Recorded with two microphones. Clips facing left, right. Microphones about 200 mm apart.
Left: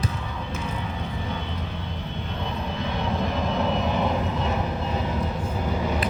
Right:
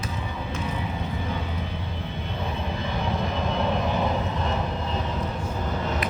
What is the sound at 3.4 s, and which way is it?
Vehicle, centre (ahead or behind).